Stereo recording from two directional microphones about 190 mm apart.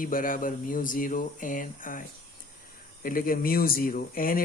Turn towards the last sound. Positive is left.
turn(degrees=50)  # may be behind; listen again after turning